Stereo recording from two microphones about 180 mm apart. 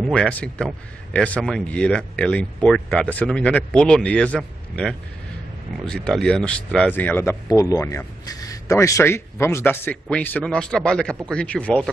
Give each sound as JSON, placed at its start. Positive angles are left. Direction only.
{"t": 0.1, "sound": "speech", "side_deg": 5}